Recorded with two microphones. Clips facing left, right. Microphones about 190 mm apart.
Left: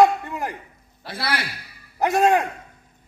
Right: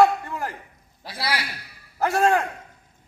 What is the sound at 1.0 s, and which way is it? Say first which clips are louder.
Speech: left 1 dB; 55° left (ahead or behind).